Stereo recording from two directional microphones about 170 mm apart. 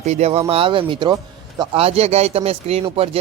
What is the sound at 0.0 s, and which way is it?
Speech, 40° right (ahead or behind).